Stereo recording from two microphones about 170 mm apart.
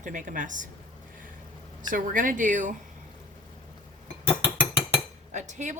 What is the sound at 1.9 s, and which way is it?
Speech, 55° right (ahead or behind).